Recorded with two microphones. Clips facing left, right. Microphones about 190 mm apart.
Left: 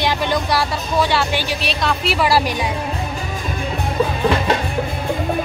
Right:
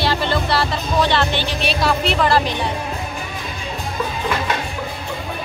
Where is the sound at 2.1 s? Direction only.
10° left (ahead or behind).